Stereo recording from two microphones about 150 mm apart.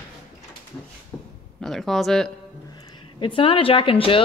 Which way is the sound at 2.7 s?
25° left (ahead or behind).